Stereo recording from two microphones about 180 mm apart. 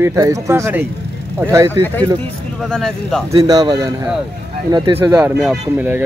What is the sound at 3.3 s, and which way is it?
Speech, 20° right (ahead or behind).